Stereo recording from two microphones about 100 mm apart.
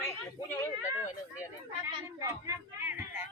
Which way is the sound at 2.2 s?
35° right (ahead or behind).